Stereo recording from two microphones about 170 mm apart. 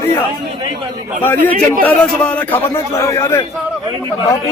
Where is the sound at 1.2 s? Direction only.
10° left (ahead or behind).